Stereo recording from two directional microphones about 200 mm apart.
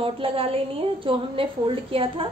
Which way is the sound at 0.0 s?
25° right (ahead or behind).